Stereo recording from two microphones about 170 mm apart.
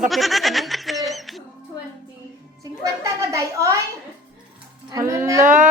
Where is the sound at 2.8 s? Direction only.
20° right (ahead or behind).